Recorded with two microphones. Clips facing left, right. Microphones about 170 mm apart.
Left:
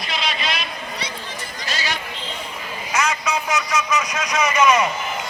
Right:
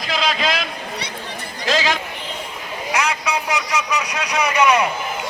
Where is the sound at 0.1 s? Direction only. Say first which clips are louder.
Right 6 dB; 90° right.